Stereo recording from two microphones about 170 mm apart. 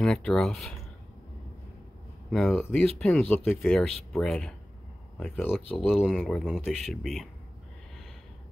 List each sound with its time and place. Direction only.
0.0 s speech: 5° left (ahead or behind)
2.3 s speech: 5° left (ahead or behind)
5.9 s speech: 5° right (ahead or behind)